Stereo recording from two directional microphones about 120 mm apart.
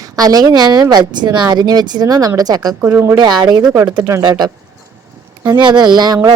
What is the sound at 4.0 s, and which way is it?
Speech, 25° right (ahead or behind).